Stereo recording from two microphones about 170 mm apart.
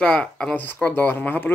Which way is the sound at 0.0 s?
5° left (ahead or behind).